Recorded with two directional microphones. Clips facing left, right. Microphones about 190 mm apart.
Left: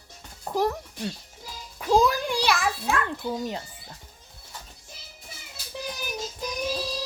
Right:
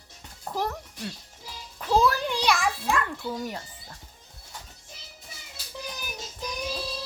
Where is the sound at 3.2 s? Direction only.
20° left (ahead or behind).